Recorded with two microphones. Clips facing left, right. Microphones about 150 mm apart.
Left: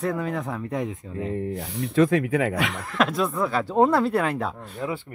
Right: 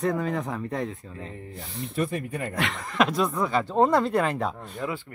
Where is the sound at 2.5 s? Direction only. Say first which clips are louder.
Left 2 dB; 5° left (ahead or behind).